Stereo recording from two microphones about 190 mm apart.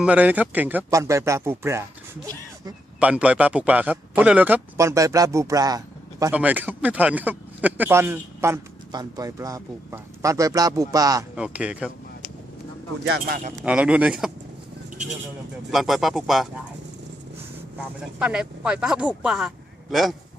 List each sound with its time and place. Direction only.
0.0 s speech: 10° right (ahead or behind)
3.0 s speech: 5° right (ahead or behind)
6.3 s speech: 10° right (ahead or behind)
11.3 s speech: 5° right (ahead or behind)
13.1 s speech: 55° right (ahead or behind)
13.7 s speech: 5° right (ahead or behind)
15.7 s speech: centre (ahead or behind)
17.7 s speech: 5° right (ahead or behind)